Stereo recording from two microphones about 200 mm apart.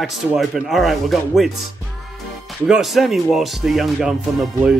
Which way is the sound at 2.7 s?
Centre (ahead or behind).